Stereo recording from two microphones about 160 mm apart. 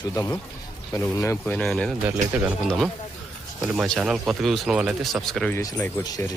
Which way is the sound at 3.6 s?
Centre (ahead or behind).